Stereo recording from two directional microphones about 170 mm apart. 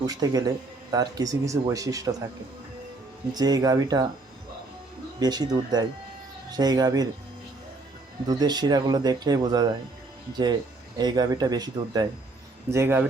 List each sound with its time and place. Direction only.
0.0 s a man's voice: 20° right (ahead or behind)
3.3 s a man's voice: 25° right (ahead or behind)
5.2 s a man's voice: 25° right (ahead or behind)
8.3 s a man's voice: 25° right (ahead or behind)